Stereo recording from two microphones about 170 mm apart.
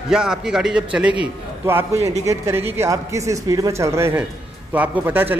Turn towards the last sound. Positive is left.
turn(degrees=-10)  # may be behind; listen again after turning